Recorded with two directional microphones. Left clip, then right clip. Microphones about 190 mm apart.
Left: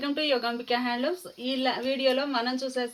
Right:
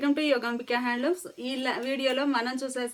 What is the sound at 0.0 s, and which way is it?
Speech, 30° right (ahead or behind).